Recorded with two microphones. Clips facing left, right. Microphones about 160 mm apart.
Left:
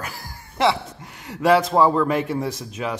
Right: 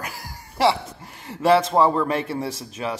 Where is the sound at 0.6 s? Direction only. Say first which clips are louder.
Even; centre (ahead or behind).